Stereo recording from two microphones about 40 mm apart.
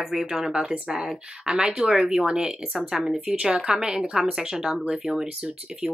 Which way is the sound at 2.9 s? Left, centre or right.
Centre.